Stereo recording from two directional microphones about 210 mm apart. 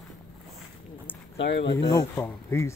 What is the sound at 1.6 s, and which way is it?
Speech, 20° left (ahead or behind).